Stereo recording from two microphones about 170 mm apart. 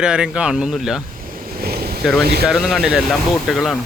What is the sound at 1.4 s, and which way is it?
Vehicle, 65° right (ahead or behind).